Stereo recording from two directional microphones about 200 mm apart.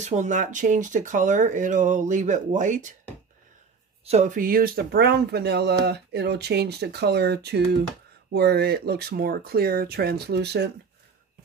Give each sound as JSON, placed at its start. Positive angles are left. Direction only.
{"t": 0.0, "sound": "speech", "side_deg": -35}
{"t": 4.0, "sound": "speech", "side_deg": -35}